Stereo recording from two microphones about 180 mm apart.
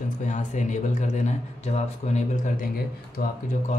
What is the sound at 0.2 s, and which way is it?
Speech, 45° left (ahead or behind).